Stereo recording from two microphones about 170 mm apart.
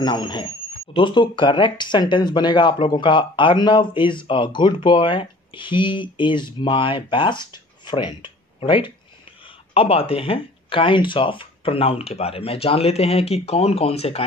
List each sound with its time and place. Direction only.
0.0 s speech: 25° left (ahead or behind)